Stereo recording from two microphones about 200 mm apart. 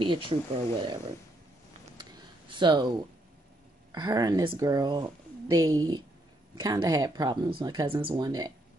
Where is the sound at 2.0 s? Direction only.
25° right (ahead or behind).